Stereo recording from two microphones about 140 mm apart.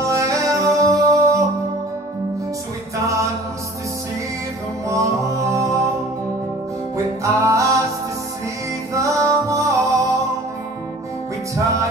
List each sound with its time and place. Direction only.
0.0 s music: 20° right (ahead or behind)
4.8 s music: 20° right (ahead or behind)
7.2 s music: 20° right (ahead or behind)
8.9 s music: 20° right (ahead or behind)
11.5 s music: 20° right (ahead or behind)